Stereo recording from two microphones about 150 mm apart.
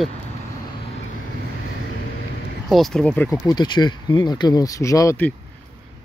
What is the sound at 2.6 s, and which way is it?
Speech, centre (ahead or behind).